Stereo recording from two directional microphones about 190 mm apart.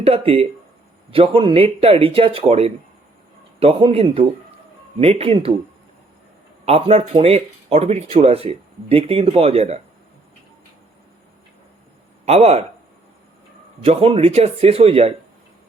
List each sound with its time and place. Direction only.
0.0 s speech: 30° right (ahead or behind)
6.7 s speech: 30° right (ahead or behind)
12.2 s speech: 35° right (ahead or behind)
13.8 s speech: 30° right (ahead or behind)